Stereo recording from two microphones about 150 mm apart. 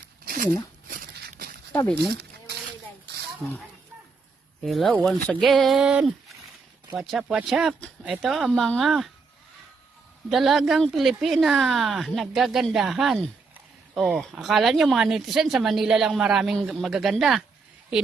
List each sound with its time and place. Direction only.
0.3 s a sound: 70° right (ahead or behind)
3.4 s speech: centre (ahead or behind)
4.6 s speech: centre (ahead or behind)
10.2 s speech: centre (ahead or behind)